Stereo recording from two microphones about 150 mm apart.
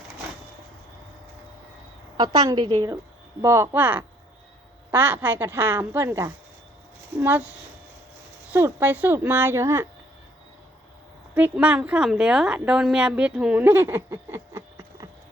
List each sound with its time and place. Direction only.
2.1 s a woman's voice: 25° right (ahead or behind)
11.3 s a woman's voice: 10° right (ahead or behind)